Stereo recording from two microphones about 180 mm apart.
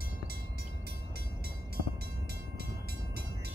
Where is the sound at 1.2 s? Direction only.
60° right (ahead or behind).